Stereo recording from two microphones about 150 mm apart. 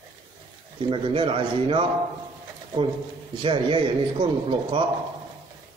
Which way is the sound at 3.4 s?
35° right (ahead or behind).